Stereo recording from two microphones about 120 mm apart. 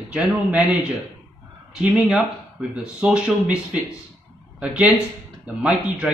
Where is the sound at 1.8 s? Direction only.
5° right (ahead or behind).